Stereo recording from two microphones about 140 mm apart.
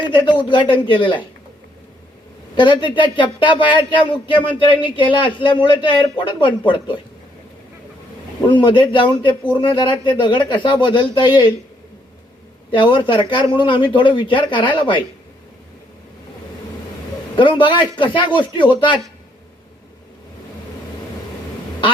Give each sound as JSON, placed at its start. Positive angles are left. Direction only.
{"t": 0.1, "sound": "speech", "side_deg": 35}
{"t": 2.6, "sound": "speech", "side_deg": 35}
{"t": 8.4, "sound": "speech", "side_deg": 35}
{"t": 12.7, "sound": "speech", "side_deg": 35}
{"t": 17.3, "sound": "speech", "side_deg": 35}